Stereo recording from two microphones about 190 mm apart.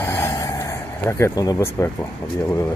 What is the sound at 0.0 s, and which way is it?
Vehicle, 15° left (ahead or behind).